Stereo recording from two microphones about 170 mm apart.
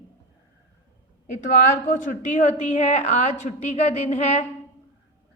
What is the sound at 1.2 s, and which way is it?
A woman's voice, 45° left (ahead or behind).